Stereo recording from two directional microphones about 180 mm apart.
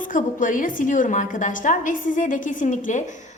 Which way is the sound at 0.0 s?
45° left (ahead or behind).